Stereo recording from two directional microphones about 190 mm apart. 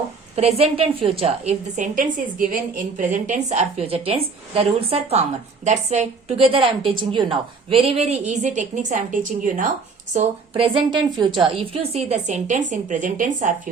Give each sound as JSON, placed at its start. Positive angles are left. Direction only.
{"t": 0.3, "sound": "a woman's voice", "side_deg": -35}
{"t": 10.2, "sound": "a woman's voice", "side_deg": -30}